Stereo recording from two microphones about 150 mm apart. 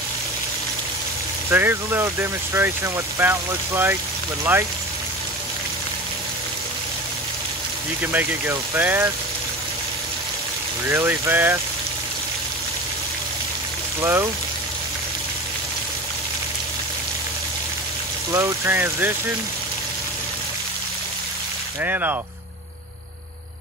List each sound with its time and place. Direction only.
1.5 s speech: 15° right (ahead or behind)
8.0 s speech: 15° right (ahead or behind)
10.9 s speech: 15° right (ahead or behind)
14.0 s speech: 15° right (ahead or behind)
18.3 s speech: 15° right (ahead or behind)
21.8 s speech: 15° right (ahead or behind)